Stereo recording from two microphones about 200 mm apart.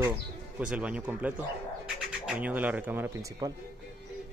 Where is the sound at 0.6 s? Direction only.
5° right (ahead or behind).